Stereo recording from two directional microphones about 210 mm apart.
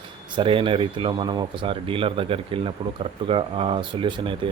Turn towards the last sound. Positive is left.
turn(degrees=-25)  # may be behind; listen again after turning